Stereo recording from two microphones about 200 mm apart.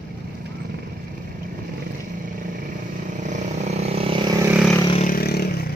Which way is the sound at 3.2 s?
35° right (ahead or behind).